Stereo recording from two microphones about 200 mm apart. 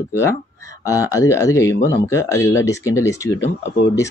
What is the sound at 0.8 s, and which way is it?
Speech, 15° left (ahead or behind).